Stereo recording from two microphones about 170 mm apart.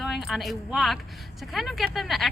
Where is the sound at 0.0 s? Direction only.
Centre (ahead or behind).